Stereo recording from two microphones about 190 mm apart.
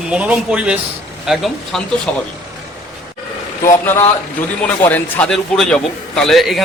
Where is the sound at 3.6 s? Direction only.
15° left (ahead or behind).